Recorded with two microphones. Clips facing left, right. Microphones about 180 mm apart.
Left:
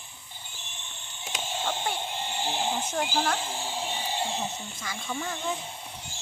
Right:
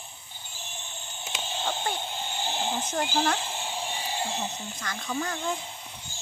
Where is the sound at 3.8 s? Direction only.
10° right (ahead or behind).